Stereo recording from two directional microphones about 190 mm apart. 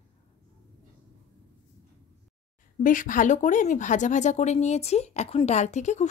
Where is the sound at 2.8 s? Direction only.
45° left (ahead or behind).